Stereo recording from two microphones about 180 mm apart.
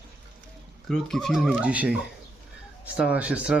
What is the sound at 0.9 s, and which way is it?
Speech, centre (ahead or behind).